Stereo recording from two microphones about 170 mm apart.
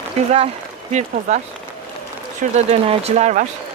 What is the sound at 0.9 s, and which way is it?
Speech, 45° right (ahead or behind).